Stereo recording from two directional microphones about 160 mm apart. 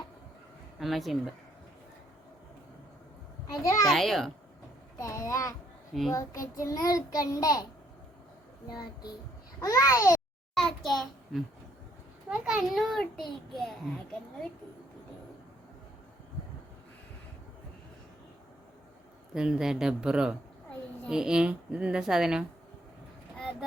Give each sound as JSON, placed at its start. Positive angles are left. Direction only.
{"t": 0.8, "sound": "a child's voice", "side_deg": 0}
{"t": 3.5, "sound": "child singing", "side_deg": 20}
{"t": 3.8, "sound": "a child's voice", "side_deg": 0}
{"t": 4.9, "sound": "child singing", "side_deg": 20}
{"t": 5.9, "sound": "a child's voice", "side_deg": 0}
{"t": 6.4, "sound": "child singing", "side_deg": 20}
{"t": 9.6, "sound": "child singing", "side_deg": 20}
{"t": 10.6, "sound": "a child's voice", "side_deg": 0}
{"t": 19.3, "sound": "a child's voice", "side_deg": -5}